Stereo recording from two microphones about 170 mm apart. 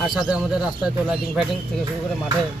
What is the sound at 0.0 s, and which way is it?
A man's voice, centre (ahead or behind).